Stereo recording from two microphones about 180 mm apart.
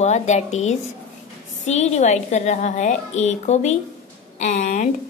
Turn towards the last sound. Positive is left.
turn(degrees=45)  # may be behind; listen again after turning